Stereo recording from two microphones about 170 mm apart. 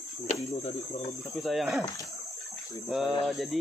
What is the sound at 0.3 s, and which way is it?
Cricket, 35° left (ahead or behind).